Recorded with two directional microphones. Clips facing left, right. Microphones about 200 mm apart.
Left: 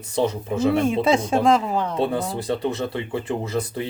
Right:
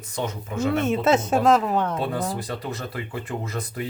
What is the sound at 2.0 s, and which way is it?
Speech, 30° left (ahead or behind).